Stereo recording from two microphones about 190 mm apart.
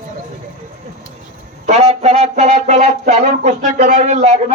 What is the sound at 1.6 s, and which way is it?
Speech, 35° right (ahead or behind).